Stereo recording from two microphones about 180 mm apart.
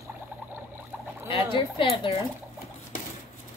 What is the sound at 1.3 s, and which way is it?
Speech, 30° left (ahead or behind).